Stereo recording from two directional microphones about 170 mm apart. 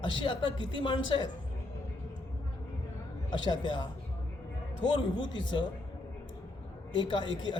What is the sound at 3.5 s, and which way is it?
Speech, 25° left (ahead or behind).